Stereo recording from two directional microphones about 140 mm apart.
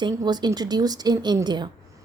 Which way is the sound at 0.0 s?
30° right (ahead or behind).